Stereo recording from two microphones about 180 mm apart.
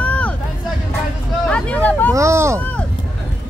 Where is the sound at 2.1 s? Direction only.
15° right (ahead or behind).